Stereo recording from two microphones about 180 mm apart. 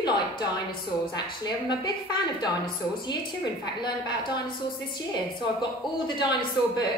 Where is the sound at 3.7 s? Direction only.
25° left (ahead or behind).